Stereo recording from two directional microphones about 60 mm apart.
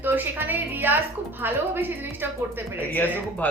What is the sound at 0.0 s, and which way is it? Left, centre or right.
A woman's voice, right.